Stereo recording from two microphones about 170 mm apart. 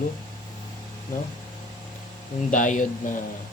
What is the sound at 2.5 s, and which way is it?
Speech, 50° left (ahead or behind).